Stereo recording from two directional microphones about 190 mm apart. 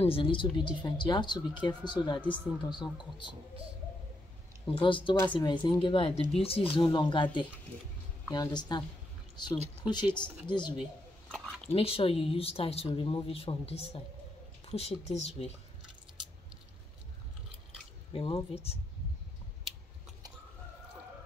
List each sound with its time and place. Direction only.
0.0 s speech: 30° left (ahead or behind)
4.7 s speech: 25° left (ahead or behind)
11.3 s dog: centre (ahead or behind)
11.7 s speech: 30° left (ahead or behind)
18.1 s speech: 30° left (ahead or behind)